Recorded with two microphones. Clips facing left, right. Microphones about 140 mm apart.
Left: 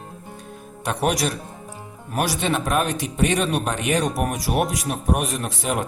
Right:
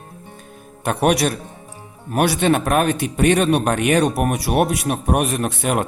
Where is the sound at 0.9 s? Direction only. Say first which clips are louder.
Right 5 dB; 60° right (ahead or behind).